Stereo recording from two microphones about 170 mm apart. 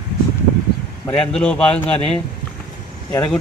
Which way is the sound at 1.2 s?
5° left (ahead or behind).